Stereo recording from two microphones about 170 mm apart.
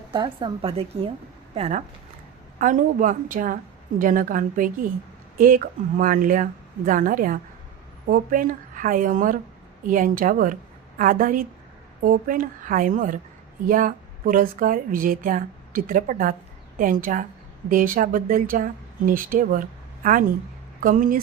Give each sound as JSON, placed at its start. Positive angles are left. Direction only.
{"t": 0.1, "sound": "a woman's voice", "side_deg": -30}
{"t": 2.6, "sound": "a woman's voice", "side_deg": -50}